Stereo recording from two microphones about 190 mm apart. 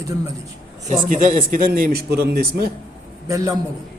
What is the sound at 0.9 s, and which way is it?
A man's voice, 45° right (ahead or behind).